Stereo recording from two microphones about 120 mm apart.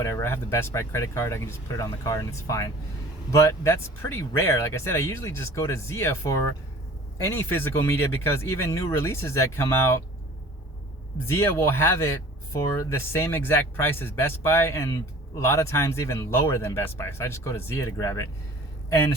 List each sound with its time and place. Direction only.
0.0 s speech: 20° left (ahead or behind)
11.3 s speech: 20° left (ahead or behind)